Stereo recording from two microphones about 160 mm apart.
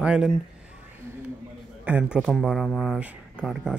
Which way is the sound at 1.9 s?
10° right (ahead or behind).